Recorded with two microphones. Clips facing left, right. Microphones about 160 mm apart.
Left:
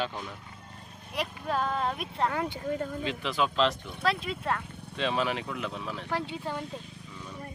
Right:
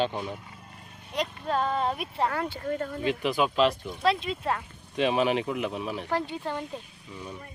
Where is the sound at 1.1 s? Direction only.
5° left (ahead or behind).